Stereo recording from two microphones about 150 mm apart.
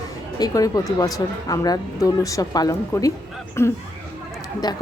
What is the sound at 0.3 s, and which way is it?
A woman's voice, 25° left (ahead or behind).